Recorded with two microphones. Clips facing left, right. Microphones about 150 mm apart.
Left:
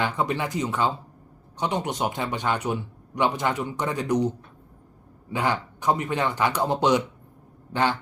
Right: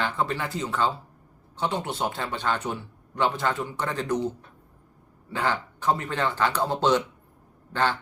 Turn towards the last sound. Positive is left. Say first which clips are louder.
# left 1 dB
turn(degrees=15)  # may be behind; listen again after turning